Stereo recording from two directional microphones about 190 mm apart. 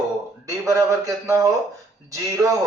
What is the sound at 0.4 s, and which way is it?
A man's voice, 15° right (ahead or behind).